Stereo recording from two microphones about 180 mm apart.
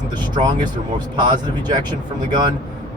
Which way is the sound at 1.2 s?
25° right (ahead or behind).